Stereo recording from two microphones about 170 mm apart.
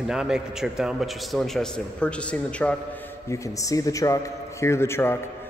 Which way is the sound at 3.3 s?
20° left (ahead or behind).